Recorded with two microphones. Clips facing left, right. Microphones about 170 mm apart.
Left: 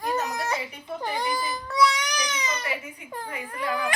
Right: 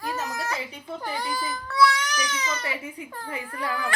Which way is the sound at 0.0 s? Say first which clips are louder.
Left 3 dB; 20° left (ahead or behind).